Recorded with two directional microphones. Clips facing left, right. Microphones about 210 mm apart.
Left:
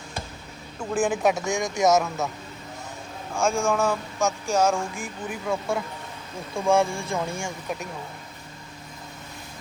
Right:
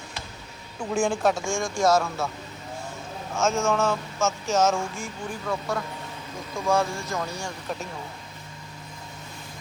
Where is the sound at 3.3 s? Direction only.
15° left (ahead or behind).